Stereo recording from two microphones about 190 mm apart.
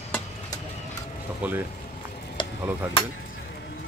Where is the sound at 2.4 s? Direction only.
25° left (ahead or behind).